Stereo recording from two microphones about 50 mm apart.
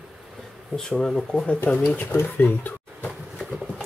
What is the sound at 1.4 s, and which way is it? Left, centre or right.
Speech, left.